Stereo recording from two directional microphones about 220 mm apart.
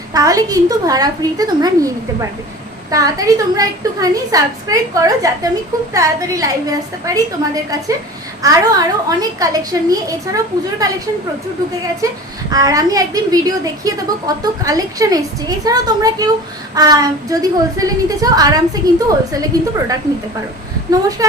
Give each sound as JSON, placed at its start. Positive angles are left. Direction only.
{"t": 0.1, "sound": "a woman's voice", "side_deg": -15}
{"t": 2.9, "sound": "a woman's voice", "side_deg": -15}
{"t": 21.2, "sound": "a woman's voice", "side_deg": -15}